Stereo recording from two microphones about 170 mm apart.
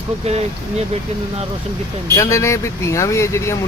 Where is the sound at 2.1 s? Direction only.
15° left (ahead or behind).